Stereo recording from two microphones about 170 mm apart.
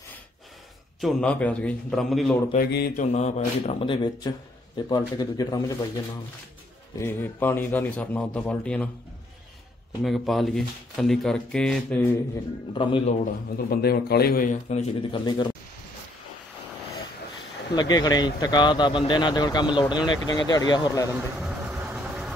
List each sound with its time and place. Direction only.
1.0 s speech: 5° left (ahead or behind)
2.5 s a man's voice: 65° left (ahead or behind)
3.1 s speech: 40° left (ahead or behind); by 5.9 s 20° left (ahead or behind)
7.0 s a man's voice: 15° left (ahead or behind)
10.0 s speech: centre (ahead or behind)
12.7 s speech: 30° left (ahead or behind)
13.7 s a man's voice: 65° left (ahead or behind); by 15.4 s 30° left (ahead or behind)
17.7 s speech: 25° left (ahead or behind)
21.2 s vehicle: 5° right (ahead or behind)